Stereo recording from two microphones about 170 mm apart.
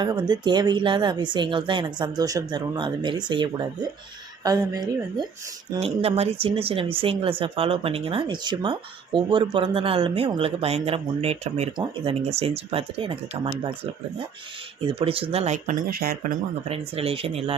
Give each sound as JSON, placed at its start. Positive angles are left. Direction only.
{"t": 0.0, "sound": "speech", "side_deg": -25}
{"t": 5.8, "sound": "speech", "side_deg": -35}
{"t": 14.8, "sound": "speech", "side_deg": -35}
{"t": 15.9, "sound": "speech", "side_deg": -60}
{"t": 16.6, "sound": "speech", "side_deg": -35}